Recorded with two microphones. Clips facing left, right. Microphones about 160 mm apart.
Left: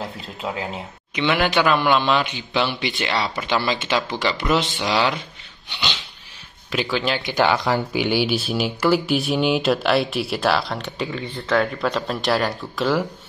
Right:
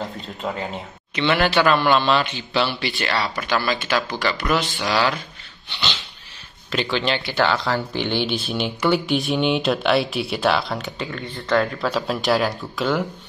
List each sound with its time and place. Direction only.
0.0 s a man's voice: 5° left (ahead or behind); by 5.2 s 20° left (ahead or behind)
5.7 s dog: 15° left (ahead or behind)
6.7 s speech: 5° left (ahead or behind)